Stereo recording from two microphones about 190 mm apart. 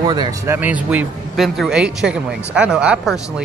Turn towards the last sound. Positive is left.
turn(degrees=-5)  # may be behind; listen again after turning